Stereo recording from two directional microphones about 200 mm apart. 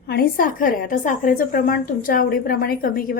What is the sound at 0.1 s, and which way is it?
A woman's voice, 45° left (ahead or behind).